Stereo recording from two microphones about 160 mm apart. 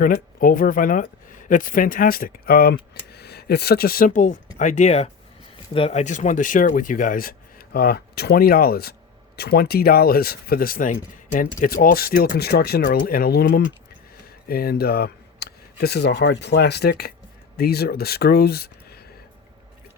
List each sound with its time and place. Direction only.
0.0 s speech: 60° left (ahead or behind); by 3.0 s 75° left (ahead or behind)
3.2 s speech: 90° left
17.6 s speech: 80° left